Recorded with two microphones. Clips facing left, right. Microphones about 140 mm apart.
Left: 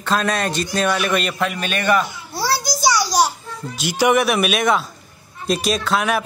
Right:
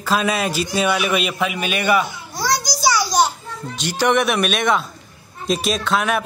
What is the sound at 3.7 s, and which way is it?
A man's voice, 10° left (ahead or behind).